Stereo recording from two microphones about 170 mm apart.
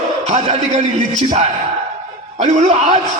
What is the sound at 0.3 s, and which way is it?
A man's voice, 40° right (ahead or behind).